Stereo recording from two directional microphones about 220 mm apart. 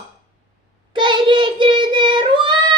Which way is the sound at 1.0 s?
20° right (ahead or behind).